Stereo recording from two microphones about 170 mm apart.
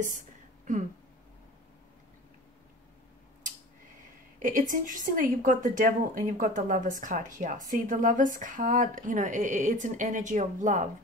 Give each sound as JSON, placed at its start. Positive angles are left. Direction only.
{"t": 4.4, "sound": "speech", "side_deg": -50}